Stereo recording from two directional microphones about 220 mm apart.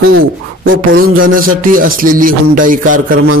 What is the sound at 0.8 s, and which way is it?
Music, 40° right (ahead or behind).